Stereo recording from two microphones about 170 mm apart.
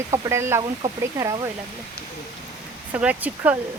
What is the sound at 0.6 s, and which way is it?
Speech, 30° right (ahead or behind).